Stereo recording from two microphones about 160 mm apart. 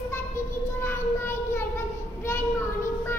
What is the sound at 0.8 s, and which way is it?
Child singing, 15° left (ahead or behind).